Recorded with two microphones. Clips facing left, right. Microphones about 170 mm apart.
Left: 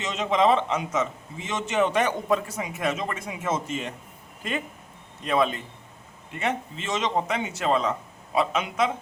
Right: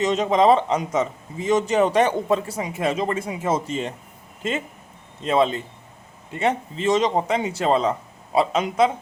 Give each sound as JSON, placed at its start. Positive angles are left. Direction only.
{"t": 0.0, "sound": "a man's voice", "side_deg": -40}
{"t": 5.2, "sound": "a man's voice", "side_deg": -25}